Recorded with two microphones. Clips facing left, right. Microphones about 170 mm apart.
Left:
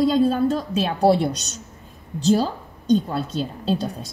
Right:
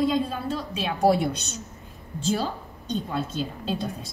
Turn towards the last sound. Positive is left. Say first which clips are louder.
# left 5 dB
turn(degrees=35)  # may be behind; listen again after turning